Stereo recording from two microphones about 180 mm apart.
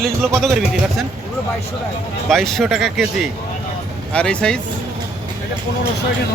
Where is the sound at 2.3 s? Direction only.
Centre (ahead or behind).